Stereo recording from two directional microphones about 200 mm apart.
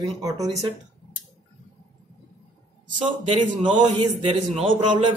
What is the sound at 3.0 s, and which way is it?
A man's voice, 25° right (ahead or behind).